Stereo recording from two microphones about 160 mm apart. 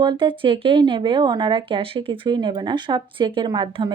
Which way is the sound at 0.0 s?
30° right (ahead or behind).